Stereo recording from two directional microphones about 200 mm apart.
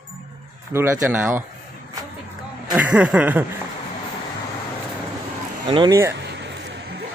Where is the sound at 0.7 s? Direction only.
15° right (ahead or behind).